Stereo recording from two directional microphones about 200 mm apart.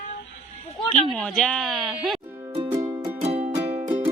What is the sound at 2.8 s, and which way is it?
Music, 15° right (ahead or behind).